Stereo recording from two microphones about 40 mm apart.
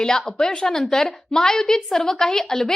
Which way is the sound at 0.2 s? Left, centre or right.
Centre.